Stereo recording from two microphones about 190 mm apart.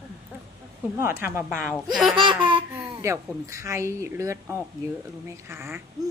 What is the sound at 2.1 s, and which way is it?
Laughter, 25° right (ahead or behind).